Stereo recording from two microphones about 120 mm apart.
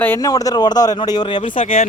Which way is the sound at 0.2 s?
30° left (ahead or behind).